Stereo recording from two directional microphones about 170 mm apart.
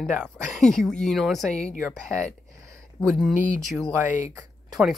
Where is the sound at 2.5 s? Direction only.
20° right (ahead or behind).